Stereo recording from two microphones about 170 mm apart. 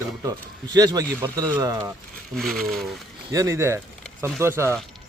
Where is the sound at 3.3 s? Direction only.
15° right (ahead or behind).